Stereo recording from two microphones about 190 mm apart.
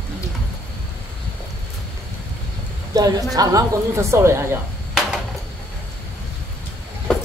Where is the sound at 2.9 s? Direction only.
20° right (ahead or behind).